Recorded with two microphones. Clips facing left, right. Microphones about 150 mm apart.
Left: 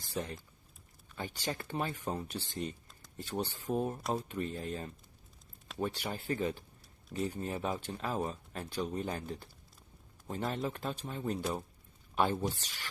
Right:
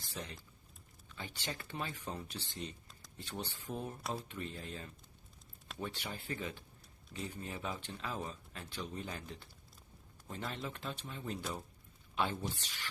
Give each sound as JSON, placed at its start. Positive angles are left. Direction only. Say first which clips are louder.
{"t": 0.0, "sound": "typing", "louder": "left 8 dB", "side_deg": 45}
{"t": 1.0, "sound": "speech", "louder": "left 6 dB", "side_deg": 45}